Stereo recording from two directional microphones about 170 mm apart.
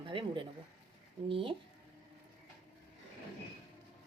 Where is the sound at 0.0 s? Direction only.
30° right (ahead or behind).